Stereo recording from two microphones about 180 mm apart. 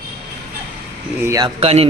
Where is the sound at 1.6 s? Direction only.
35° right (ahead or behind).